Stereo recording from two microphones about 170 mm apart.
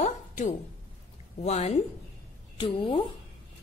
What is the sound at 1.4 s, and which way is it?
A woman's voice, 40° left (ahead or behind).